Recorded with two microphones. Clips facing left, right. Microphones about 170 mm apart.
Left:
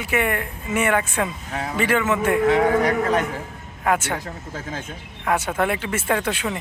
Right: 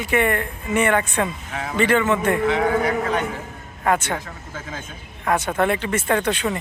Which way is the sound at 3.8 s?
10° left (ahead or behind).